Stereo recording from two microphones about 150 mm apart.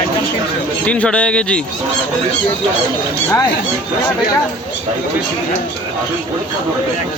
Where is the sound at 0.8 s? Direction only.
10° left (ahead or behind).